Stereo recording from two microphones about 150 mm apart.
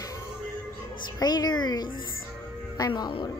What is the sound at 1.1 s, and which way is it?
Speech, 25° left (ahead or behind).